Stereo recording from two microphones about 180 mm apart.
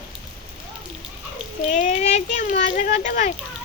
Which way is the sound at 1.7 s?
40° left (ahead or behind).